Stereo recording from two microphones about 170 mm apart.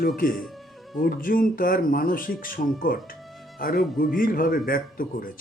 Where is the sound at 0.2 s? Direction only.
55° left (ahead or behind).